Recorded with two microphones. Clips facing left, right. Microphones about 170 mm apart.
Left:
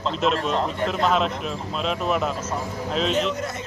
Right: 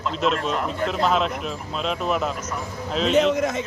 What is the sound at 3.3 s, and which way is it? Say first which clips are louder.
Speech: right 6 dB; 90° right.